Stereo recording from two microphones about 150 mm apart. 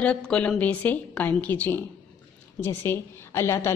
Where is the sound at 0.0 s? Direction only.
5° left (ahead or behind).